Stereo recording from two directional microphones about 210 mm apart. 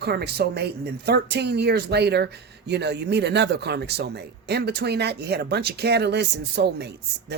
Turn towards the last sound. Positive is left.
turn(degrees=-50)  # may be behind; listen again after turning